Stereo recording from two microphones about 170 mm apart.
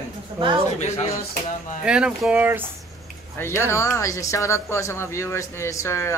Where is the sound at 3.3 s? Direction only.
15° left (ahead or behind).